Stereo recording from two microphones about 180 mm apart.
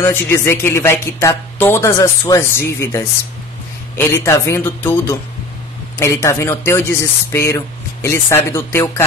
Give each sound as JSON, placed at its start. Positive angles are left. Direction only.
{"t": 0.0, "sound": "speech", "side_deg": 15}